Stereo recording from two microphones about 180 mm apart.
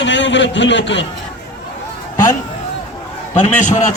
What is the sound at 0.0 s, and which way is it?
A man's voice, 85° left.